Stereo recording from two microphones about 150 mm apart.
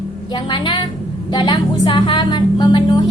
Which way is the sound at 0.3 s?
30° left (ahead or behind).